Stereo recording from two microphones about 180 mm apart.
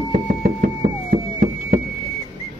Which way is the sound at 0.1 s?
50° right (ahead or behind).